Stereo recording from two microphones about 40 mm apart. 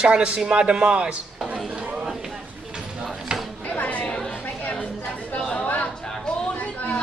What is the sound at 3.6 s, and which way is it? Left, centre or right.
Chatter, left.